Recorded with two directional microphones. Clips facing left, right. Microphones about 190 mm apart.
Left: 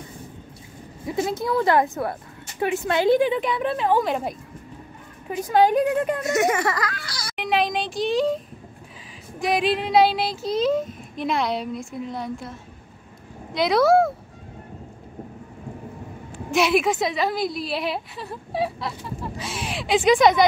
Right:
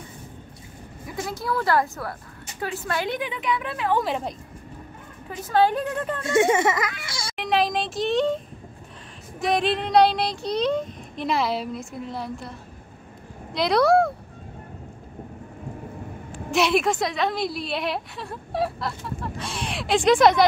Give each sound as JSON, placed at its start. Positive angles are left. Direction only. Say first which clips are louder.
{"t": 1.0, "sound": "a woman's voice", "louder": "left 5 dB", "side_deg": 25}
{"t": 4.0, "sound": "a woman's voice", "louder": "left 2 dB", "side_deg": 5}
{"t": 5.3, "sound": "a woman's voice", "louder": "left 3 dB", "side_deg": 15}
{"t": 6.2, "sound": "a child's voice", "louder": "right 7 dB", "side_deg": -30}
{"t": 7.3, "sound": "a woman's voice", "louder": "even", "side_deg": 0}
{"t": 9.4, "sound": "a woman's voice", "louder": "left 1 dB", "side_deg": 0}
{"t": 16.4, "sound": "a woman's voice", "louder": "left 1 dB", "side_deg": 0}